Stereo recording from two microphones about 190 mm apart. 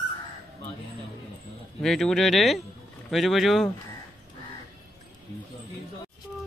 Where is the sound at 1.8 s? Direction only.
Centre (ahead or behind).